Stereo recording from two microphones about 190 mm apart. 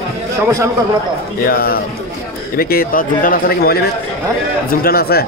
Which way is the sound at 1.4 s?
50° left (ahead or behind).